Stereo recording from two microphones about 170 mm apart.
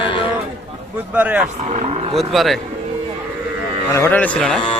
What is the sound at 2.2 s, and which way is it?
Speech, centre (ahead or behind).